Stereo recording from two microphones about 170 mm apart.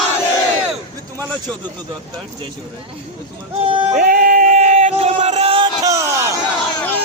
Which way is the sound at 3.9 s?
55° right (ahead or behind).